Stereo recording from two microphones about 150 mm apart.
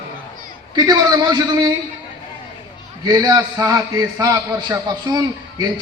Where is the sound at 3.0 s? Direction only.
25° right (ahead or behind).